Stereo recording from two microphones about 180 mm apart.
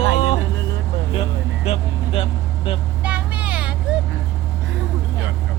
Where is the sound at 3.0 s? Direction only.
10° right (ahead or behind).